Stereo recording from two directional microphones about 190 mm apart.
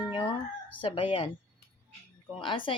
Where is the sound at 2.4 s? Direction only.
25° left (ahead or behind).